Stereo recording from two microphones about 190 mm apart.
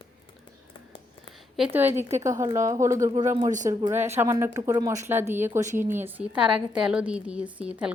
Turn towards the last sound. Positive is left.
turn(degrees=-5)  # may be behind; listen again after turning